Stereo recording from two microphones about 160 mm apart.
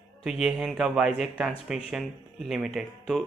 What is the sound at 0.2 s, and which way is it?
Speech, 5° right (ahead or behind).